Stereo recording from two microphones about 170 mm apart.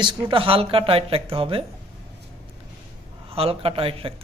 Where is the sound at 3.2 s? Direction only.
35° right (ahead or behind).